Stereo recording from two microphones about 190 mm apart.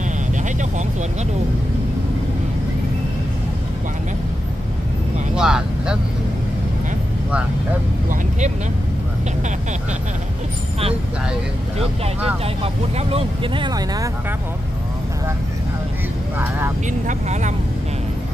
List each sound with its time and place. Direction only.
5.3 s vehicle: 5° right (ahead or behind)
12.6 s speech: 30° right (ahead or behind)
16.3 s speech: 10° right (ahead or behind)
17.1 s speech: 40° right (ahead or behind)